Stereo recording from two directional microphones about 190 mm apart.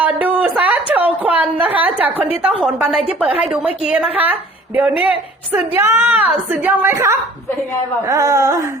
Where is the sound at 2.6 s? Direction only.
5° right (ahead or behind).